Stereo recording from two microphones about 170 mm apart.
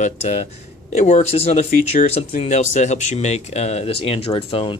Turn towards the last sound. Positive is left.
turn(degrees=35)  # may be behind; listen again after turning